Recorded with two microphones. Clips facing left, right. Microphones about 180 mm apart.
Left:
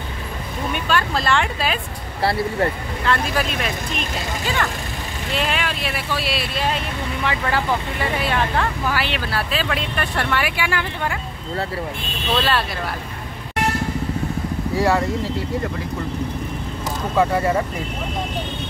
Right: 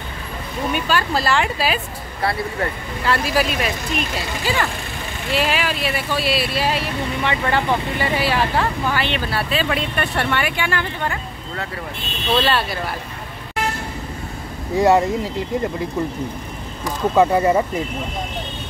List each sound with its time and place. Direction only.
0.7 s speech: 5° right (ahead or behind)
3.1 s speech: 5° right (ahead or behind)
12.4 s speech: centre (ahead or behind)
14.8 s speech: 20° right (ahead or behind)
17.2 s speech: 20° right (ahead or behind)